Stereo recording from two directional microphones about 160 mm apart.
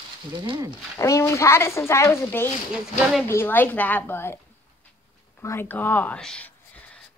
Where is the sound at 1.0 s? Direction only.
20° left (ahead or behind).